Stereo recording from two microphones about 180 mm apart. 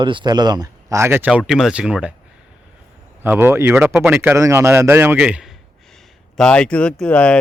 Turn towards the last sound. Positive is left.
turn(degrees=5)  # may be behind; listen again after turning